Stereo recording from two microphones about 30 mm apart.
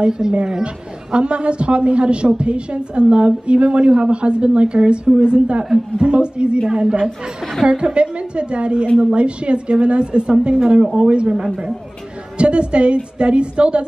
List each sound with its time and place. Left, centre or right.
0.0 s a woman's voice: right
12.4 s a woman's voice: right